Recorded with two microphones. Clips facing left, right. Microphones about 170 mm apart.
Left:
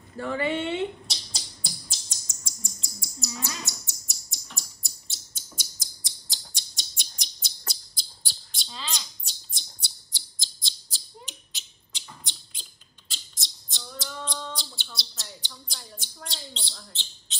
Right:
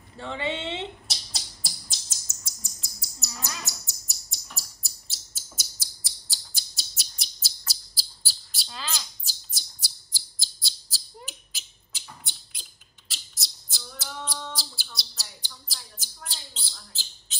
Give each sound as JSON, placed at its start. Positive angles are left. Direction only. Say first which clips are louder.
{"t": 0.2, "sound": "speech", "louder": "left 4 dB", "side_deg": -20}
{"t": 1.0, "sound": "bird", "louder": "even", "side_deg": 0}
{"t": 3.2, "sound": "bird", "louder": "left 3 dB", "side_deg": 0}
{"t": 11.5, "sound": "beatboxing", "louder": "even", "side_deg": -5}
{"t": 13.1, "sound": "a sound", "louder": "even", "side_deg": -5}